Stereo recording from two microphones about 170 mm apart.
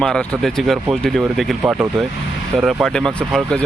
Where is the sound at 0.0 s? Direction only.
Centre (ahead or behind).